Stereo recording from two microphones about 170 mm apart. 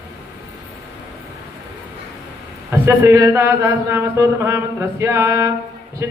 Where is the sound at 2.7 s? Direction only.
15° right (ahead or behind).